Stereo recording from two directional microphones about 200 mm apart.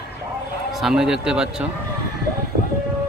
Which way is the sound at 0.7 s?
Centre (ahead or behind).